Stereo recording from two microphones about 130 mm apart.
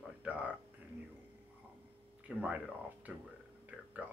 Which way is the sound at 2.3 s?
10° right (ahead or behind).